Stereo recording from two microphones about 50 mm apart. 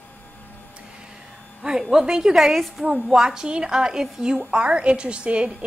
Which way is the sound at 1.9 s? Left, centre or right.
Centre.